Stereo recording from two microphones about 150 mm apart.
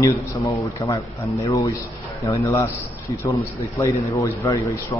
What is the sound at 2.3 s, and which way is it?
A man's voice, 20° left (ahead or behind).